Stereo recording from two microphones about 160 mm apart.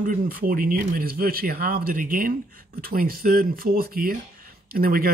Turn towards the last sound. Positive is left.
turn(degrees=-65)  # may be behind; listen again after turning